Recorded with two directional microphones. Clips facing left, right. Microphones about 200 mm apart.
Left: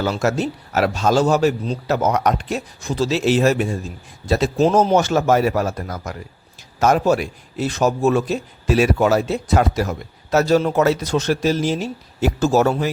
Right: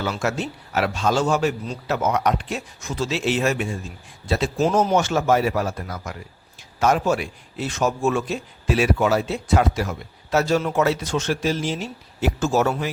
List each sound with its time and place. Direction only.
0.0 s a man's voice: 40° left (ahead or behind)